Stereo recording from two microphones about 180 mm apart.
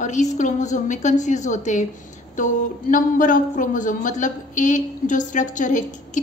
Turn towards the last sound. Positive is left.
turn(degrees=45)  # may be behind; listen again after turning